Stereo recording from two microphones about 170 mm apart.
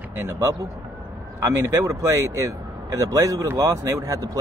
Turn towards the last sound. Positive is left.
turn(degrees=-20)  # may be behind; listen again after turning